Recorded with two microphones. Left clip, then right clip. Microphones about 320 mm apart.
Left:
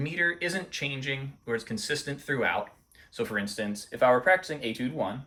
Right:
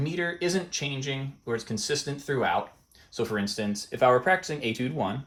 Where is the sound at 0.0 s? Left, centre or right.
Centre.